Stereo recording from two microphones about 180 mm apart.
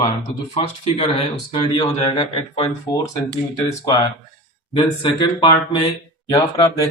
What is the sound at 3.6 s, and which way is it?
Speech, 20° left (ahead or behind).